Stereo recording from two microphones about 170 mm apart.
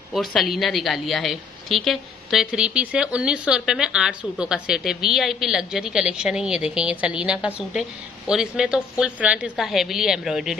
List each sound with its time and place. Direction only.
0.1 s a woman's voice: centre (ahead or behind)